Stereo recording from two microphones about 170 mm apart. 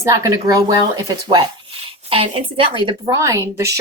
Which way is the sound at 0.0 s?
20° right (ahead or behind).